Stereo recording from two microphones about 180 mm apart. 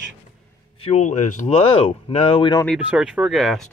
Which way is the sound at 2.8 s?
5° right (ahead or behind).